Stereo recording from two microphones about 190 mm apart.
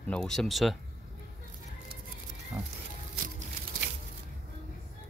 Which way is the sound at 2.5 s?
5° right (ahead or behind).